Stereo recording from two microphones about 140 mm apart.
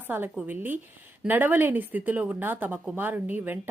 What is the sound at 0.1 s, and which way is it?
A woman's voice, 15° right (ahead or behind).